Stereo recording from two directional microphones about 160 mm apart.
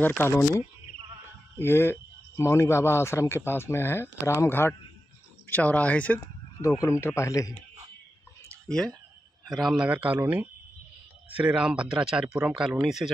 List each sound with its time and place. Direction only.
0.2 s speech: 15° left (ahead or behind)
8.5 s a sound: 5° left (ahead or behind)
9.5 s speech: centre (ahead or behind)